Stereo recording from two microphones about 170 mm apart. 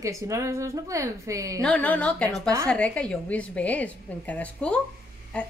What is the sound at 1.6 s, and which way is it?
A woman's voice, 5° left (ahead or behind).